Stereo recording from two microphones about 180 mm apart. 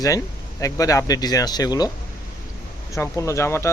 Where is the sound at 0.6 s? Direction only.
20° left (ahead or behind).